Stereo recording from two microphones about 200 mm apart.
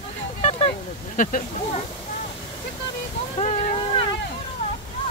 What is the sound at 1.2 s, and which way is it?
Speech, 40° left (ahead or behind).